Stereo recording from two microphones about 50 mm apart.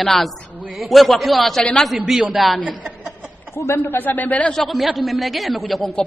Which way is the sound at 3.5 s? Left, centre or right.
Left.